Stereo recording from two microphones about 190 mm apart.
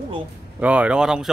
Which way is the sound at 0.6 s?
5° right (ahead or behind).